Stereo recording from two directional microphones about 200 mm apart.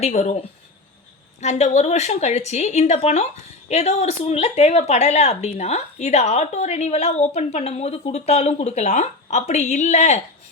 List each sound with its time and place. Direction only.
0.0 s speech: 35° left (ahead or behind)
1.4 s speech: 35° left (ahead or behind)